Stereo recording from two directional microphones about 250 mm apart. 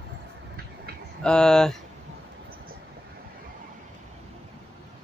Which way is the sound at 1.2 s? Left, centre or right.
Centre.